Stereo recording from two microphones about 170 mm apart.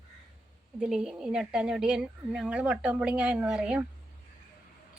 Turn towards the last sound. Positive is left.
turn(degrees=-5)  # may be behind; listen again after turning